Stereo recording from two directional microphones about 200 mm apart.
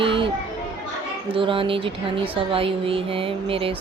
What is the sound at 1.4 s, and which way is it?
Speech, 25° right (ahead or behind).